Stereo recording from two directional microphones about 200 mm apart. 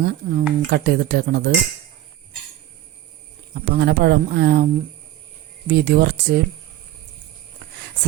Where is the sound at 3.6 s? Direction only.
55° right (ahead or behind).